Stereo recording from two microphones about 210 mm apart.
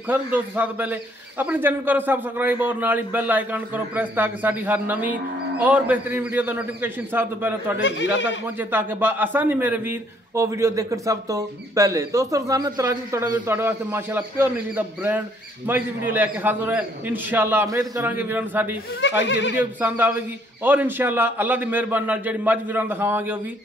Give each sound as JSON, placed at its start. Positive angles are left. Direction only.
{"t": 0.1, "sound": "a man's voice", "side_deg": -10}
{"t": 7.8, "sound": "speech", "side_deg": 60}
{"t": 8.5, "sound": "a man's voice", "side_deg": -10}
{"t": 18.9, "sound": "speech", "side_deg": 60}
{"t": 19.5, "sound": "a man's voice", "side_deg": -10}